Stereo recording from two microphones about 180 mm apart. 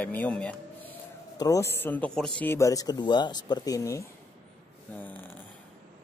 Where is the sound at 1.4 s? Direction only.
15° left (ahead or behind).